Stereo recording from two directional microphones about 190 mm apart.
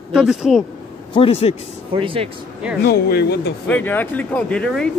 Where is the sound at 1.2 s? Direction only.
30° left (ahead or behind).